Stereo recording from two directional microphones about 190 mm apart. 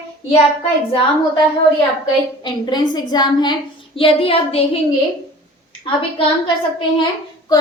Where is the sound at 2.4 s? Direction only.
20° left (ahead or behind).